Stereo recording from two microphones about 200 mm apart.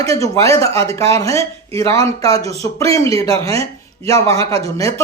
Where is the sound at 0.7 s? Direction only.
30° right (ahead or behind).